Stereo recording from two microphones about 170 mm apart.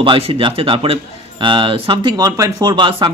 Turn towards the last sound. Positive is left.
turn(degrees=-30)  # may be behind; listen again after turning